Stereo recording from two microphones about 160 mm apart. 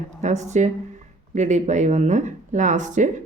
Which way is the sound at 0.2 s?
45° right (ahead or behind).